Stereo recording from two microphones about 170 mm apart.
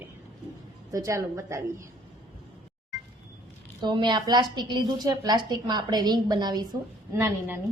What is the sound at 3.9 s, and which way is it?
A woman's voice, 25° right (ahead or behind).